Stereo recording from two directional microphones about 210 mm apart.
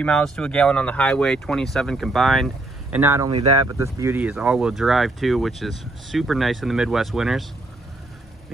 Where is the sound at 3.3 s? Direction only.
25° right (ahead or behind).